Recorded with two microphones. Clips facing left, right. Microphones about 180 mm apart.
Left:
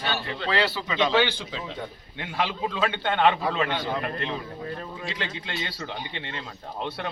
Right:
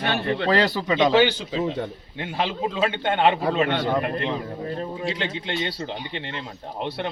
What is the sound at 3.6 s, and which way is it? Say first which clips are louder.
Speech: right 5 dB; 65° right (ahead or behind).